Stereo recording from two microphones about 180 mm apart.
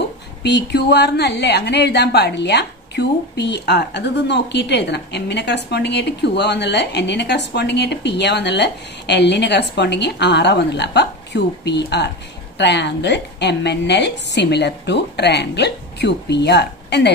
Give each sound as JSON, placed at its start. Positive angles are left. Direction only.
{"t": 0.4, "sound": "a woman's voice", "side_deg": 70}